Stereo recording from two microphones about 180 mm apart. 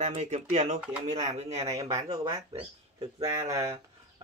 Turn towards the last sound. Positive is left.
turn(degrees=-15)  # may be behind; listen again after turning